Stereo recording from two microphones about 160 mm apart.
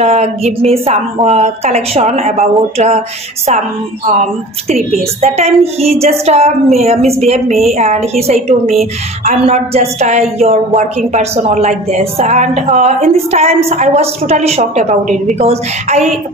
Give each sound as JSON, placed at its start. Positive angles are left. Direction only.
{"t": 0.0, "sound": "a woman's voice", "side_deg": -40}
{"t": 4.2, "sound": "a woman's voice", "side_deg": -45}